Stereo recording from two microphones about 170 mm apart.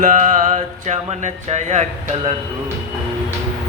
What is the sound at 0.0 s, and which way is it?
Music, 45° right (ahead or behind).